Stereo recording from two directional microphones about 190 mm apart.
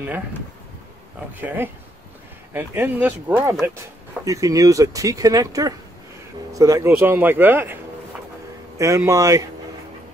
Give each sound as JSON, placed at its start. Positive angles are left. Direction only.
{"t": 2.5, "sound": "speech", "side_deg": -10}